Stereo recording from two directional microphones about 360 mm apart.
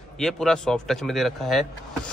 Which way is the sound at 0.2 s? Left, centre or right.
Centre.